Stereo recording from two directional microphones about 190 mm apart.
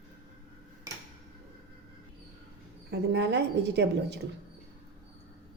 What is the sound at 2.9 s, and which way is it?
A woman's voice, 65° right (ahead or behind).